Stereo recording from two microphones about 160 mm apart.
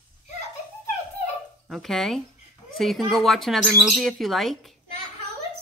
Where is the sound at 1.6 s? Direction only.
Centre (ahead or behind).